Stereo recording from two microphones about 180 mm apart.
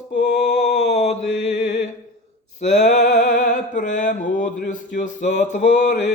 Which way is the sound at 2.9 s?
40° left (ahead or behind).